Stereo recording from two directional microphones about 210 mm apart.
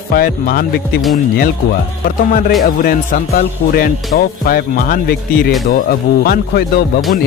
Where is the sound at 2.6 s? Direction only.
45° left (ahead or behind).